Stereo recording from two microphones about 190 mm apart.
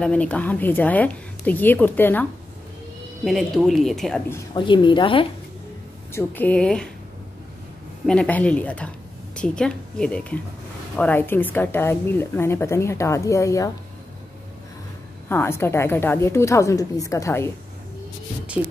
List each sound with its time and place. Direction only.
0.0 s a woman's voice: 5° left (ahead or behind)
3.3 s speech: centre (ahead or behind)
4.6 s a woman's voice: 25° left (ahead or behind)
6.1 s speech: 10° left (ahead or behind)
8.1 s a woman's voice: 5° left (ahead or behind)
15.2 s a woman's voice: 10° left (ahead or behind)